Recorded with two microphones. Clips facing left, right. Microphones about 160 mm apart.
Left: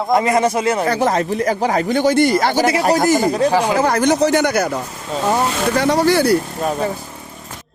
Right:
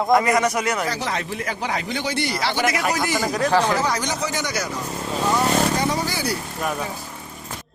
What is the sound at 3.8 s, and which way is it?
Speech, 55° left (ahead or behind).